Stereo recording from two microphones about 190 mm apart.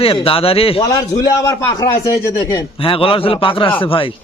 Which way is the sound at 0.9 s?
20° left (ahead or behind).